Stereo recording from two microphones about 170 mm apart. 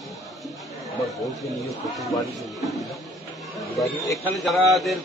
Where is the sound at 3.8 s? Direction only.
20° left (ahead or behind).